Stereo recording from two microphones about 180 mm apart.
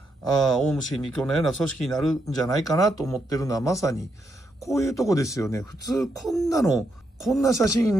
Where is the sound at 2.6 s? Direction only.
20° left (ahead or behind).